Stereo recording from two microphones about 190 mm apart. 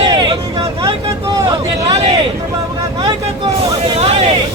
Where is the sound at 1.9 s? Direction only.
25° right (ahead or behind).